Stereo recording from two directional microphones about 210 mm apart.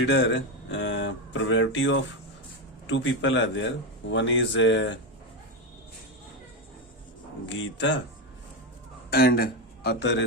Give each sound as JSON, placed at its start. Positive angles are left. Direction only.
{"t": 0.0, "sound": "speech", "side_deg": 55}
{"t": 7.4, "sound": "speech", "side_deg": 60}
{"t": 9.0, "sound": "a man's voice", "side_deg": 45}